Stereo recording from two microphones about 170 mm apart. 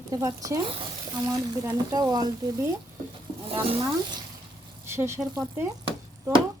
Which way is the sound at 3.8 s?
20° right (ahead or behind).